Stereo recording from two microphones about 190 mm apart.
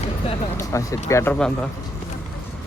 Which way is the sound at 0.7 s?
15° left (ahead or behind).